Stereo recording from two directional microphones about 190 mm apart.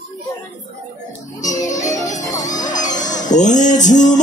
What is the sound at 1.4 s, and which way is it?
Music, 40° left (ahead or behind).